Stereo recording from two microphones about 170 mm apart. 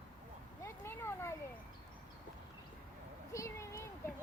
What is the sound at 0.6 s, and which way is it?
Children playing, 15° left (ahead or behind).